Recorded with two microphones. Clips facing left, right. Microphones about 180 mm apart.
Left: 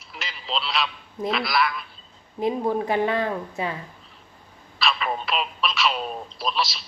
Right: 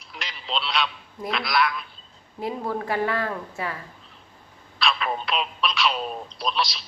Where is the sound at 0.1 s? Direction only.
Centre (ahead or behind).